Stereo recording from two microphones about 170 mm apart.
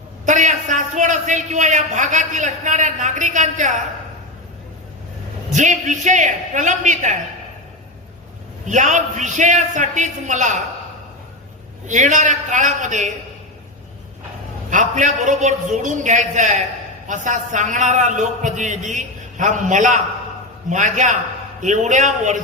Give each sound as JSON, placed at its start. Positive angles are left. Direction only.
{"t": 0.3, "sound": "a man's voice", "side_deg": -45}
{"t": 5.5, "sound": "a man's voice", "side_deg": -45}
{"t": 8.6, "sound": "a man's voice", "side_deg": -45}
{"t": 11.9, "sound": "a man's voice", "side_deg": -45}
{"t": 14.7, "sound": "a man's voice", "side_deg": -45}